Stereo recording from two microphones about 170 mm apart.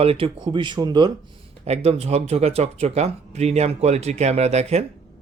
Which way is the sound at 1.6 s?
40° right (ahead or behind).